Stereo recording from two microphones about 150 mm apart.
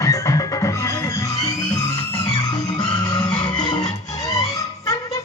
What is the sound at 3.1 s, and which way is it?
Music, 30° left (ahead or behind).